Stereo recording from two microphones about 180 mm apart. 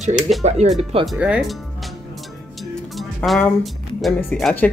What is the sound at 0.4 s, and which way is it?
Speech, 35° right (ahead or behind).